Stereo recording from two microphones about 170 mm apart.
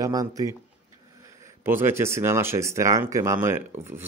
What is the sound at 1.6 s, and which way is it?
Speech, 15° right (ahead or behind).